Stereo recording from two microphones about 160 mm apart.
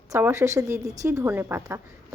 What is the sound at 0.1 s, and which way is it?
A woman's voice, 15° right (ahead or behind).